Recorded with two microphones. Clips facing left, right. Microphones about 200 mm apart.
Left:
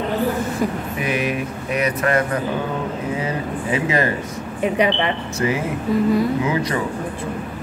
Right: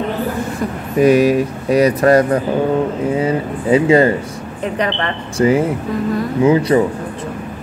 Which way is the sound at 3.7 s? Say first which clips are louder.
Right 10 dB; 30° right (ahead or behind).